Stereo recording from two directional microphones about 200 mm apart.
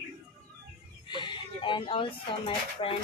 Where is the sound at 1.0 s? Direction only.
25° left (ahead or behind).